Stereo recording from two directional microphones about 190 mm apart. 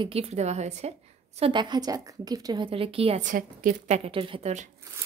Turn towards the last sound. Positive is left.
turn(degrees=-35)  # may be behind; listen again after turning